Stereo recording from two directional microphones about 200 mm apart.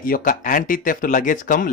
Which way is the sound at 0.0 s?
45° left (ahead or behind).